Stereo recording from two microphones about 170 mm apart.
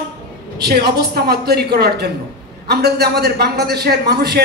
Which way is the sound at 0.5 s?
70° right (ahead or behind).